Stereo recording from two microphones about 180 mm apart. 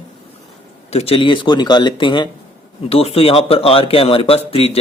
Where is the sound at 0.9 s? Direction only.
35° left (ahead or behind).